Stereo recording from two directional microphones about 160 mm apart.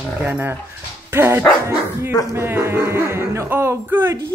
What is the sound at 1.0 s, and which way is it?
Dog, 15° right (ahead or behind).